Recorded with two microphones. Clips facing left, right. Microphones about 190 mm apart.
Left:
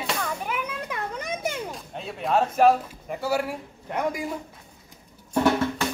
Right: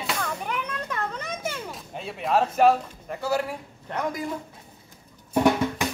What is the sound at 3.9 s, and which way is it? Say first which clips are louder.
Speech: left 2 dB; 10° left (ahead or behind).